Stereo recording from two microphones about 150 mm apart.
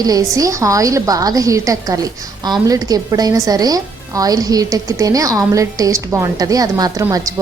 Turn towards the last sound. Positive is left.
turn(degrees=-25)  # may be behind; listen again after turning